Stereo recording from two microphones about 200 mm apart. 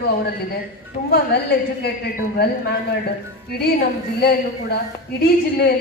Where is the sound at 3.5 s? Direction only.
50° left (ahead or behind).